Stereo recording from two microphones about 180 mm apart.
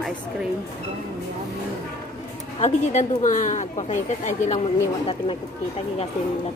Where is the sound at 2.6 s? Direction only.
40° left (ahead or behind).